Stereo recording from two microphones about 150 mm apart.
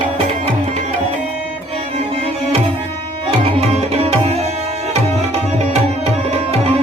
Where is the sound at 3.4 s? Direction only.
45° right (ahead or behind).